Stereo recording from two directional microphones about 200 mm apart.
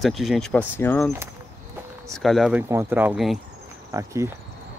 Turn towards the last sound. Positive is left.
turn(degrees=-15)  # may be behind; listen again after turning